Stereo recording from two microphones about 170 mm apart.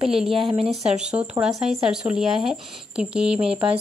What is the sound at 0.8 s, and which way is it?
A woman's voice, 5° right (ahead or behind).